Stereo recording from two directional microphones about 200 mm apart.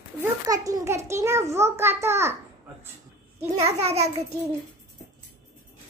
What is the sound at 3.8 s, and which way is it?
Child singing, 35° right (ahead or behind).